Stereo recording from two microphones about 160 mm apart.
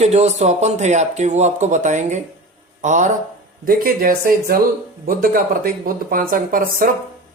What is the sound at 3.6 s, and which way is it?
Speech, 65° right (ahead or behind).